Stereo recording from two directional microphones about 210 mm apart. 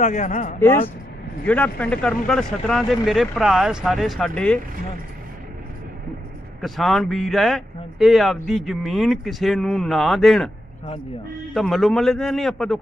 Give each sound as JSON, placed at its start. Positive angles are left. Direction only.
{"t": 0.0, "sound": "speech", "side_deg": 35}
{"t": 0.6, "sound": "speech", "side_deg": 10}
{"t": 6.6, "sound": "speech", "side_deg": 0}
{"t": 11.5, "sound": "speech", "side_deg": 0}